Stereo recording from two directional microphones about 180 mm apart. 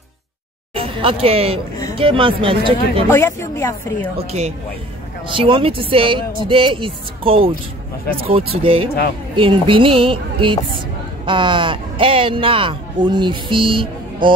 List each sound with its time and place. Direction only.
0.7 s a man's voice: 30° right (ahead or behind)
3.1 s speech: 15° left (ahead or behind)
4.2 s a man's voice: 35° right (ahead or behind)